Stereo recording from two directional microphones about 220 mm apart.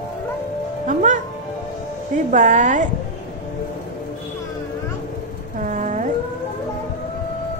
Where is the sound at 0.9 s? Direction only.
35° right (ahead or behind).